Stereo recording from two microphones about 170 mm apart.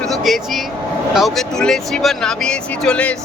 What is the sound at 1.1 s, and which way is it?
Speech, centre (ahead or behind).